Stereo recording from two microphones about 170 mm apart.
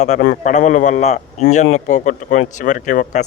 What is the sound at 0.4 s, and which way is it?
A man's voice, 45° left (ahead or behind).